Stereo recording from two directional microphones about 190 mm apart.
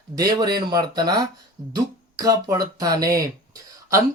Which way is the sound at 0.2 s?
20° right (ahead or behind).